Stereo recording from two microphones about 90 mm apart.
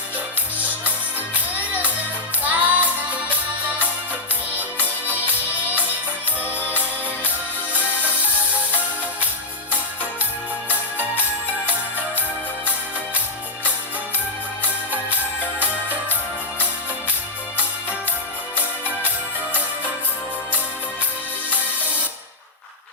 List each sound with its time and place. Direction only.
0.6 s music: 20° right (ahead or behind)
2.4 s music: 15° right (ahead or behind)
4.5 s music: 20° right (ahead or behind)
6.4 s music: 20° left (ahead or behind)
11.2 s music: 20° right (ahead or behind)
15.6 s music: 20° right (ahead or behind)